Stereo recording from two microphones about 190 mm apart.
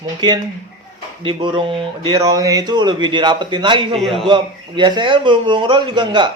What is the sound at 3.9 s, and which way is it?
Speech, centre (ahead or behind).